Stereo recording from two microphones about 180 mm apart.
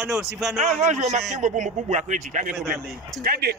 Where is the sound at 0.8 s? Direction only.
40° right (ahead or behind).